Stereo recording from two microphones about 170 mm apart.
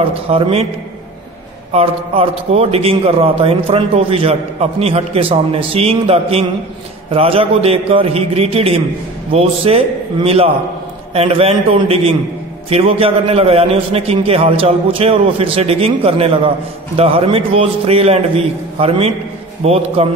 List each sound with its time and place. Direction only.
0.3 s a man's voice: 35° right (ahead or behind)
1.7 s a man's voice: 35° right (ahead or behind)